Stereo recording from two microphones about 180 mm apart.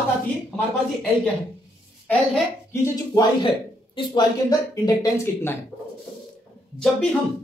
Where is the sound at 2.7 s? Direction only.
20° left (ahead or behind).